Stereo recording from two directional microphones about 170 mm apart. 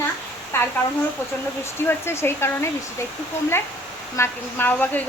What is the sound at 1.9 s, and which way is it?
Speech, 15° left (ahead or behind).